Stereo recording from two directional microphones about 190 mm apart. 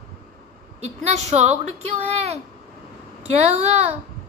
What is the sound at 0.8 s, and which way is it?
Speech, 35° right (ahead or behind).